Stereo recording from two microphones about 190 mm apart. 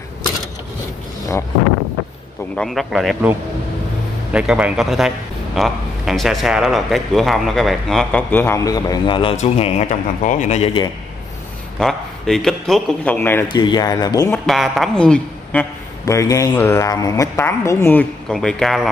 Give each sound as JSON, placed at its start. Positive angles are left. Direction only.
{"t": 2.5, "sound": "a man's voice", "side_deg": 0}
{"t": 11.8, "sound": "a man's voice", "side_deg": 0}
{"t": 13.5, "sound": "speech", "side_deg": 25}
{"t": 14.4, "sound": "a woman's voice", "side_deg": 0}
{"t": 16.1, "sound": "speech", "side_deg": 15}